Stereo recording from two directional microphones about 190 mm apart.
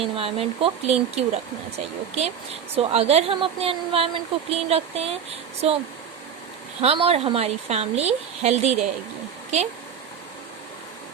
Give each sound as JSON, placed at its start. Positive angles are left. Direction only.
{"t": 0.0, "sound": "a woman's voice", "side_deg": -30}
{"t": 6.8, "sound": "a woman's voice", "side_deg": -30}